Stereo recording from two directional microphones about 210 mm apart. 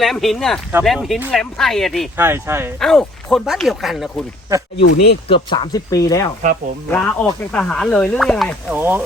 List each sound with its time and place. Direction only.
0.0 s speech: centre (ahead or behind)
2.1 s speech: 10° right (ahead or behind)
2.8 s speech: centre (ahead or behind)
4.8 s speech: 55° left (ahead or behind)
5.3 s speech: 20° left (ahead or behind); by 8.5 s centre (ahead or behind)
8.7 s speech: 10° right (ahead or behind)